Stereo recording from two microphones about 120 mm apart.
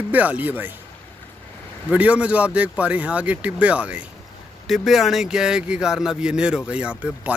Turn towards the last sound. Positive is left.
turn(degrees=-10)  # may be behind; listen again after turning